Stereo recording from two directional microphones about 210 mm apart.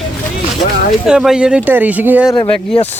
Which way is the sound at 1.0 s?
5° right (ahead or behind).